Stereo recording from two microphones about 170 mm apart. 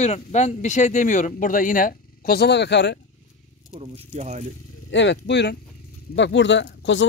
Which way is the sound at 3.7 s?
35° right (ahead or behind).